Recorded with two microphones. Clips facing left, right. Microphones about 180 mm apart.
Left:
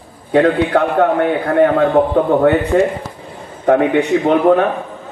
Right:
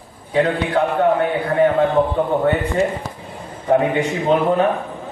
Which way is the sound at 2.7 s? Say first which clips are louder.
Left 5 dB; 80° left.